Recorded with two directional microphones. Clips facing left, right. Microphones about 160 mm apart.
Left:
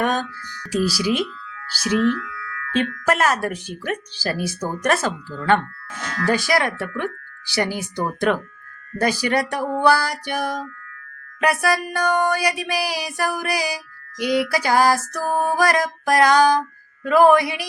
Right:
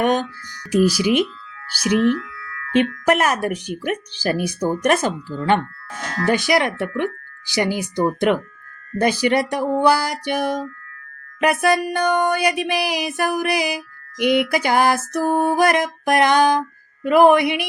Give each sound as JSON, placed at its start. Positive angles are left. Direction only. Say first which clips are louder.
{"t": 0.0, "sound": "music", "louder": "right 3 dB", "side_deg": -20}
{"t": 0.7, "sound": "speech", "louder": "right 4 dB", "side_deg": -15}
{"t": 1.8, "sound": "music", "louder": "right 2 dB", "side_deg": -20}
{"t": 2.1, "sound": "music", "louder": "right 2 dB", "side_deg": -30}
{"t": 3.1, "sound": "speech", "louder": "left 1 dB", "side_deg": -20}
{"t": 6.2, "sound": "music", "louder": "right 2 dB", "side_deg": -20}